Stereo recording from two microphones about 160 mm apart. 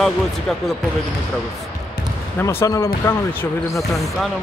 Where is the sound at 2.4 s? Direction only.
15° left (ahead or behind).